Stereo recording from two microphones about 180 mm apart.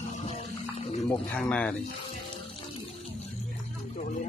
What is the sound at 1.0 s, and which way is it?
Speech, 10° left (ahead or behind).